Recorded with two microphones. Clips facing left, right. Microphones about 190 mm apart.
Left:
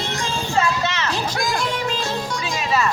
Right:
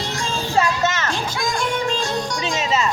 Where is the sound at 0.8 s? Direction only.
45° right (ahead or behind).